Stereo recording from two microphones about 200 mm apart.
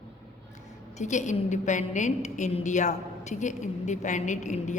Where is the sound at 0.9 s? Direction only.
35° left (ahead or behind).